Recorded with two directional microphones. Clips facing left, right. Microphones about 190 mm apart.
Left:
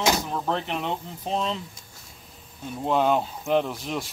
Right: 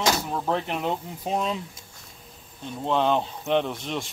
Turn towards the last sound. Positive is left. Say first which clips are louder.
# left 1 dB
turn(degrees=0)  # may be behind; listen again after turning